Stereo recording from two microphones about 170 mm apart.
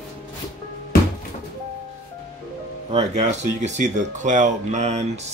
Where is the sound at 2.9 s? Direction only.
40° right (ahead or behind).